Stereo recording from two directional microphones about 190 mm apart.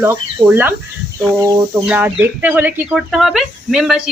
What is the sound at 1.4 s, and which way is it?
Speech, 15° right (ahead or behind).